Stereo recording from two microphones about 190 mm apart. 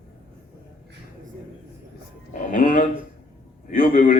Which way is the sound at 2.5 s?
45° left (ahead or behind).